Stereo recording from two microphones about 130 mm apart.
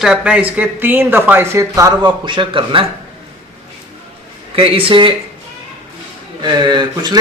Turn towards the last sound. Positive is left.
turn(degrees=-30)  # may be behind; listen again after turning